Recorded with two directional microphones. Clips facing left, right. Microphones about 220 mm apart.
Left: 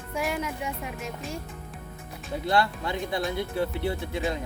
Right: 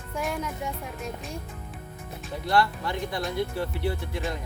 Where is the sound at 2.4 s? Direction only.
25° left (ahead or behind).